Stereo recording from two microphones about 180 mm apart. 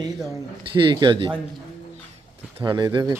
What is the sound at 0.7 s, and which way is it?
Speech, 25° right (ahead or behind).